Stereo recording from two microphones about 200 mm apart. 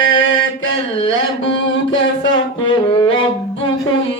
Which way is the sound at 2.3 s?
25° left (ahead or behind).